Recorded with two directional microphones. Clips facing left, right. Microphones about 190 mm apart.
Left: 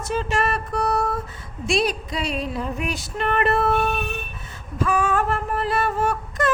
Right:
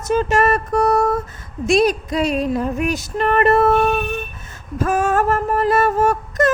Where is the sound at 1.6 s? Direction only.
45° right (ahead or behind).